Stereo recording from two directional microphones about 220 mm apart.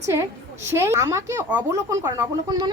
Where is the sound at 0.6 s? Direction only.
10° right (ahead or behind).